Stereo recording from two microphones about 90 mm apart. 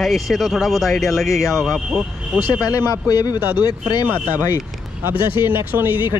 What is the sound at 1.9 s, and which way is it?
Speech, 10° right (ahead or behind).